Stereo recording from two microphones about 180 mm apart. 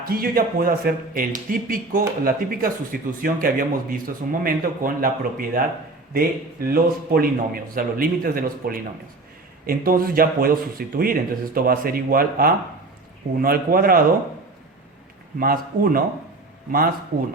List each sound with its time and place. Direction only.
0.0 s speech: 55° right (ahead or behind)
15.4 s a man's voice: 55° right (ahead or behind)